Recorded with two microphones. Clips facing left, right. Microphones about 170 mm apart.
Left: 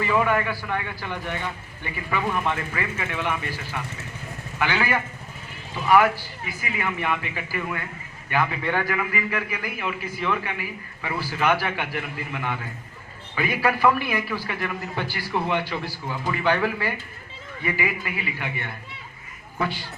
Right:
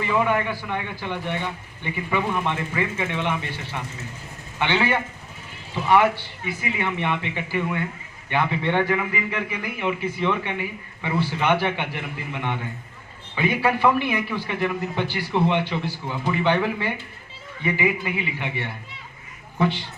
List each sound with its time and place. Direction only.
0.0 s a man's voice: 15° right (ahead or behind)